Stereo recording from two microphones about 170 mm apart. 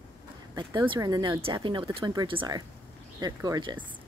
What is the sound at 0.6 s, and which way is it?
Speech, 25° right (ahead or behind).